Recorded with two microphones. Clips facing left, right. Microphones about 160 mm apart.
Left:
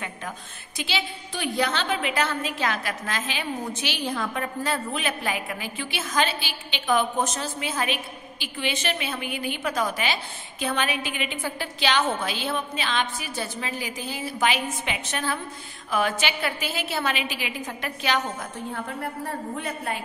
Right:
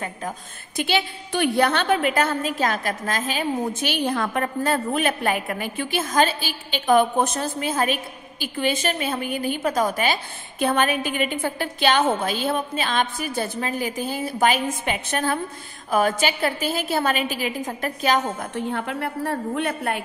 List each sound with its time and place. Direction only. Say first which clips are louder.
0.7 s a woman's voice: right 6 dB; 55° right (ahead or behind)
18.5 s a woman's voice: right 6 dB; 80° right; by 20.0 s 65° right (ahead or behind)